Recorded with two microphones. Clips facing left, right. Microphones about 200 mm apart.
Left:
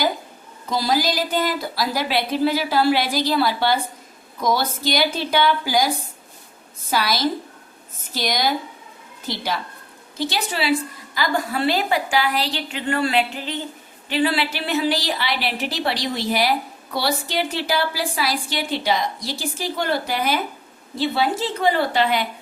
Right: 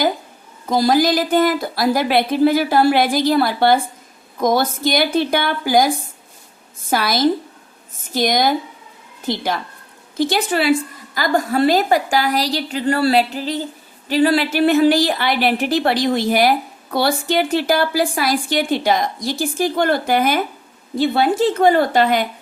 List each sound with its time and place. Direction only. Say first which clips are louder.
0.7 s a woman's voice: right 6 dB; 50° right (ahead or behind)
6.9 s a woman's voice: right 5 dB; 50° right (ahead or behind)